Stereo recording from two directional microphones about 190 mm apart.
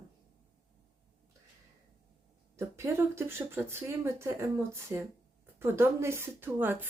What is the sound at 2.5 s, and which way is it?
Speech, 15° right (ahead or behind).